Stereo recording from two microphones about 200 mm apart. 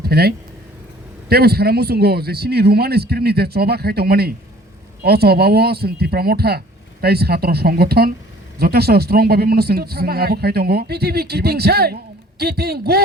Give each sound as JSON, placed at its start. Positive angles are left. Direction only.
{"t": 0.0, "sound": "speech", "side_deg": -50}